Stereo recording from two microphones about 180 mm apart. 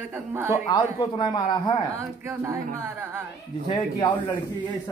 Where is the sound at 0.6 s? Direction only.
25° left (ahead or behind).